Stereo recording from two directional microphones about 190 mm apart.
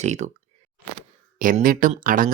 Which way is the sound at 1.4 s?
45° right (ahead or behind).